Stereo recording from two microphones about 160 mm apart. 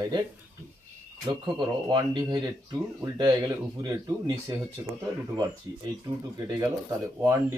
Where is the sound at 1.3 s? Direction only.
25° right (ahead or behind).